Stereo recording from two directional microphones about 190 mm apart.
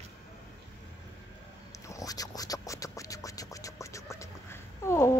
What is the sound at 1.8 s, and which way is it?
Scratch, 20° left (ahead or behind).